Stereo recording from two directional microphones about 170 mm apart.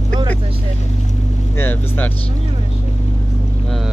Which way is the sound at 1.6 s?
10° left (ahead or behind).